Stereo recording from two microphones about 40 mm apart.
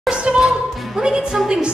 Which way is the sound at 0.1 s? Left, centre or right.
Right.